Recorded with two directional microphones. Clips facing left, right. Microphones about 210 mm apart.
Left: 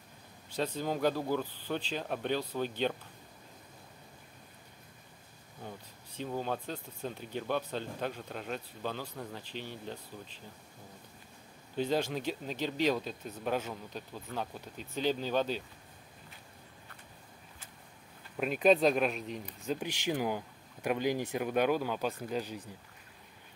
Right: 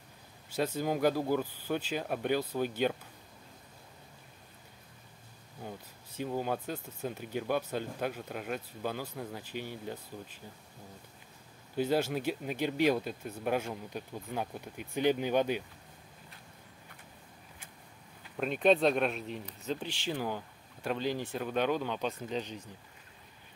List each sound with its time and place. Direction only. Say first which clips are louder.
0.5 s speech: right 2 dB; 10° right (ahead or behind)
5.6 s speech: right 2 dB; 10° right (ahead or behind)
11.7 s speech: right 2 dB; 10° right (ahead or behind)
18.4 s speech: even; 5° left (ahead or behind)
19.4 s speech: left 3 dB; 10° left (ahead or behind)